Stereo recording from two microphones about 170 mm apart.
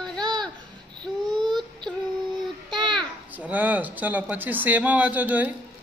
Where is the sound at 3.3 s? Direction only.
10° right (ahead or behind).